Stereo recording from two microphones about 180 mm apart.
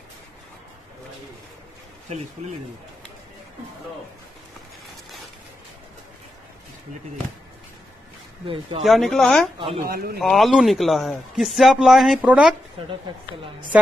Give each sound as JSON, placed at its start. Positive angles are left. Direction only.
{"t": 8.5, "sound": "speech", "side_deg": -30}
{"t": 8.8, "sound": "a man's voice", "side_deg": 0}
{"t": 9.8, "sound": "a man's voice", "side_deg": -55}
{"t": 10.2, "sound": "a man's voice", "side_deg": 0}
{"t": 13.1, "sound": "speech", "side_deg": -25}